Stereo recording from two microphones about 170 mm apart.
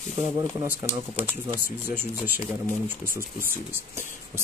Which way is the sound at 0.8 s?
15° left (ahead or behind).